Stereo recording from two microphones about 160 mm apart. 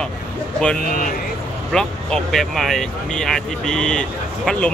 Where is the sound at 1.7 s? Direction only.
5° left (ahead or behind).